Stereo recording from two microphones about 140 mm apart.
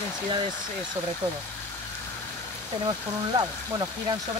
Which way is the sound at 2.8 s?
30° right (ahead or behind).